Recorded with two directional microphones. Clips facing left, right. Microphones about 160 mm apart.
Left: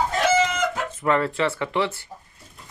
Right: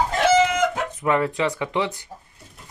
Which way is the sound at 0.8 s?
15° right (ahead or behind).